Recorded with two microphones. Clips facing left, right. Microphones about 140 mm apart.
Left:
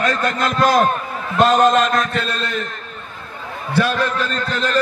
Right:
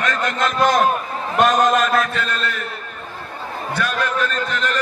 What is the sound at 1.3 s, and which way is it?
Speech, 10° right (ahead or behind).